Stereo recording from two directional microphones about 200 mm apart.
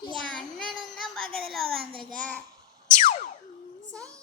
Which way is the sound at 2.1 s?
5° left (ahead or behind).